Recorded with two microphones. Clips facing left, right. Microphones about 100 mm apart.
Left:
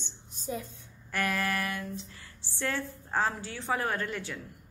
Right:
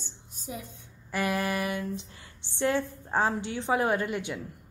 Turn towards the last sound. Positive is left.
turn(degrees=-15)  # may be behind; listen again after turning